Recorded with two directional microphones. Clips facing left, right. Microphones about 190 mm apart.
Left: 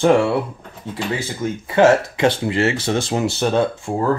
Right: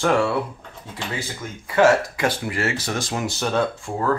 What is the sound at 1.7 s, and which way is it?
Speech, 25° left (ahead or behind).